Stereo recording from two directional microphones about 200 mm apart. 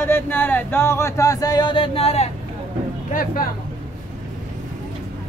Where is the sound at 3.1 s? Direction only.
45° left (ahead or behind).